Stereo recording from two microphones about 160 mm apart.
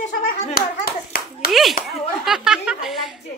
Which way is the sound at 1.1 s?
65° left (ahead or behind).